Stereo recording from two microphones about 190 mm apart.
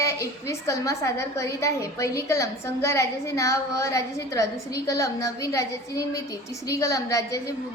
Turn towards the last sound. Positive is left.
turn(degrees=15)  # may be behind; listen again after turning